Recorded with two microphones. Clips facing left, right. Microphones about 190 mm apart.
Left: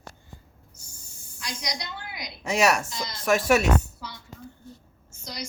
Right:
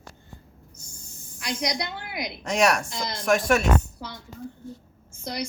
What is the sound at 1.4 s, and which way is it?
Speech, 60° right (ahead or behind).